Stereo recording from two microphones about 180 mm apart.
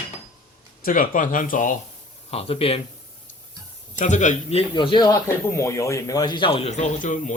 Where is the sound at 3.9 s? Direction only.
40° left (ahead or behind).